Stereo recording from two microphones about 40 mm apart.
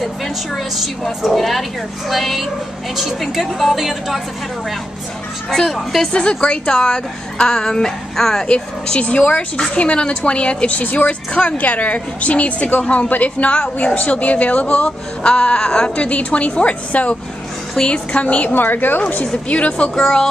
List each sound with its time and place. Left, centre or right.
1.2 s speech: centre
5.5 s a woman's voice: centre
6.1 s a woman's voice: left
10.8 s a woman's voice: left
12.8 s a woman's voice: left
16.1 s a woman's voice: left
18.5 s a woman's voice: left
19.5 s a woman's voice: left
20.0 s a woman's voice: centre